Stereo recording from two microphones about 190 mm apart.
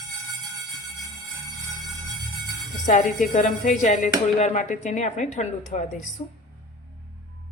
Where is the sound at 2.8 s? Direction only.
40° left (ahead or behind).